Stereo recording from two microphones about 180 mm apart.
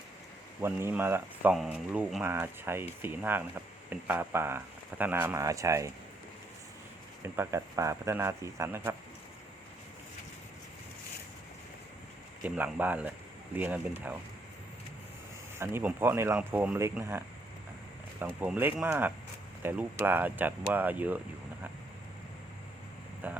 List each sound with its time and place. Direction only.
0.6 s speech: 15° right (ahead or behind)
7.2 s speech: 15° right (ahead or behind)
12.4 s speech: 10° right (ahead or behind)
15.5 s speech: 15° right (ahead or behind)
18.3 s speech: 10° right (ahead or behind)
23.2 s speech: 10° right (ahead or behind)